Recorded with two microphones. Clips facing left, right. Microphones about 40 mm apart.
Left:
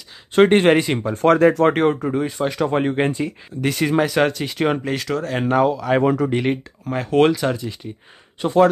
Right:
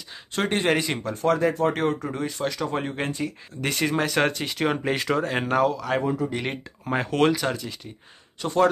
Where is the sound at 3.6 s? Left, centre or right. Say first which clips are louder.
Left 6 dB; centre.